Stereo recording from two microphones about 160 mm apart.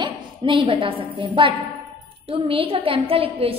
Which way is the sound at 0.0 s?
30° right (ahead or behind).